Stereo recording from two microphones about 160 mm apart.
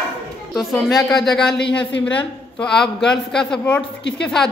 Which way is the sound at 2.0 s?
5° left (ahead or behind).